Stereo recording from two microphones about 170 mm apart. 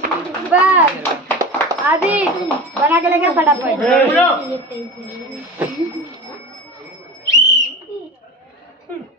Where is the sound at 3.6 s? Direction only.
10° left (ahead or behind).